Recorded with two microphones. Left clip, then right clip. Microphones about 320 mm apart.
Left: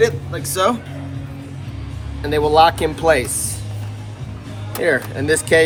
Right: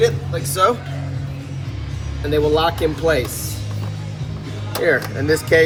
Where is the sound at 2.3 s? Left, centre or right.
Centre.